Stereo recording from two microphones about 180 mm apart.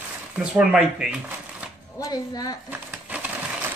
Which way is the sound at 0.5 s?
5° right (ahead or behind).